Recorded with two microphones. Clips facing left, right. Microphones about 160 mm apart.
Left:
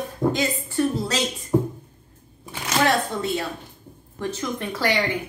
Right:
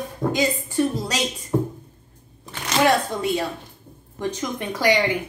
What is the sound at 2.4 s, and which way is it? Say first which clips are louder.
Shuffling cards: even; 10° left (ahead or behind).